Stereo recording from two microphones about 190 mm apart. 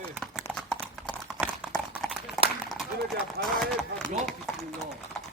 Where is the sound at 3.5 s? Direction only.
Centre (ahead or behind).